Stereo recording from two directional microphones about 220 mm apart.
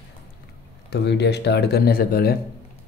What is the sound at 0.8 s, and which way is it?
Speech, 50° left (ahead or behind).